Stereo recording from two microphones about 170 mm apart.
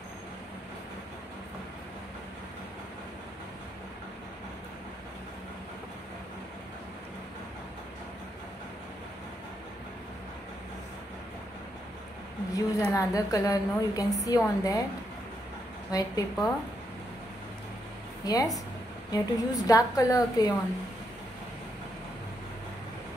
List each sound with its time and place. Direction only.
12.5 s a woman's voice: 20° left (ahead or behind)
15.9 s a woman's voice: 20° left (ahead or behind)
18.2 s a woman's voice: 20° left (ahead or behind)